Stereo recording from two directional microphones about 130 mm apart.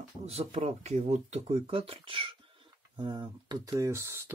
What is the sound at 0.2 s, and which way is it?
Speech, 50° right (ahead or behind).